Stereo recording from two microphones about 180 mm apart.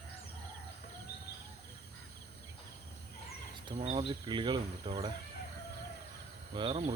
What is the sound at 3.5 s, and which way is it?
Speech, 30° right (ahead or behind).